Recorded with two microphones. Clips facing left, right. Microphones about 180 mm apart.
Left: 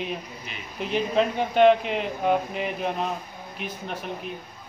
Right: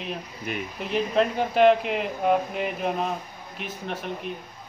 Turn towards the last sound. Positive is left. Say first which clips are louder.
# even
turn(degrees=0)  # may be behind; listen again after turning